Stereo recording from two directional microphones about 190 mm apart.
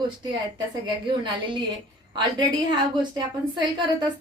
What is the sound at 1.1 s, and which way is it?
Speech, 25° right (ahead or behind).